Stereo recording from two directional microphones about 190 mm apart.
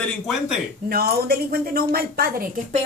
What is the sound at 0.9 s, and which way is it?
A woman's voice, 50° right (ahead or behind).